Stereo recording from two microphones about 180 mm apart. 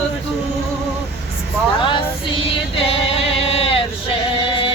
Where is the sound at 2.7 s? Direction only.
30° left (ahead or behind).